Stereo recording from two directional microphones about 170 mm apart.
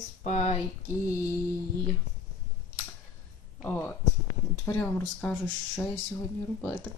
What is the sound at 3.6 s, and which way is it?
Speech, 10° left (ahead or behind).